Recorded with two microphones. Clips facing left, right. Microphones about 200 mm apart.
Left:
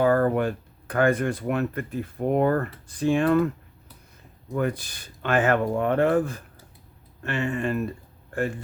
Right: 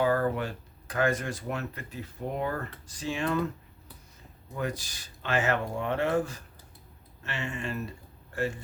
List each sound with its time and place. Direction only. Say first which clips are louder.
0.0 s speech: left 6 dB; 50° left (ahead or behind)
4.5 s speech: left 7 dB; 55° left (ahead or behind)